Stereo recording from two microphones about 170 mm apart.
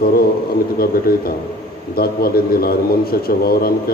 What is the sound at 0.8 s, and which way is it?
A woman's voice, 60° left (ahead or behind).